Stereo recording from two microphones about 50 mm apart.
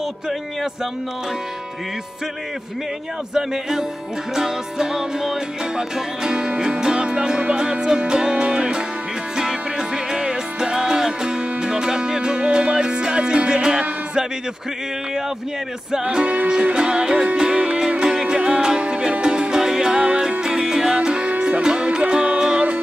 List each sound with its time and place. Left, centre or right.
4.4 s music: centre
15.9 s music: centre